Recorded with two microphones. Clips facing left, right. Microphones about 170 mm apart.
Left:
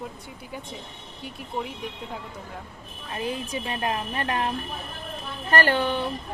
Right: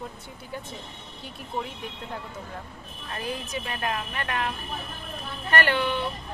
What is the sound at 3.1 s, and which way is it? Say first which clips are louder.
A woman's voice: left 3 dB; 25° left (ahead or behind).